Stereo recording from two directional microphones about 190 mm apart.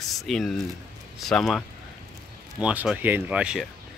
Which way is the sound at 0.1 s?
Centre (ahead or behind).